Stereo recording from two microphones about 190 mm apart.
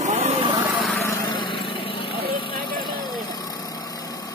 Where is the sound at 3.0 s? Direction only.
20° left (ahead or behind).